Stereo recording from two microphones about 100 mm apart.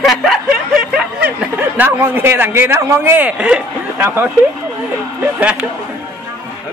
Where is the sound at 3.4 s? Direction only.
10° right (ahead or behind).